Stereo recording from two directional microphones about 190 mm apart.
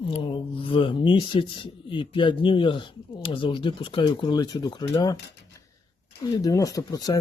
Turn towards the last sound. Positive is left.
turn(degrees=20)  # may be behind; listen again after turning